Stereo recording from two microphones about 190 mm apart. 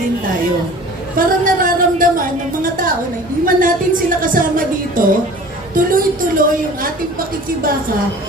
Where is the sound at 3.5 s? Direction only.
45° right (ahead or behind).